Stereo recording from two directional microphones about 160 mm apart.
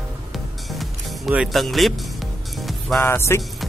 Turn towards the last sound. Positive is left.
turn(degrees=15)  # may be behind; listen again after turning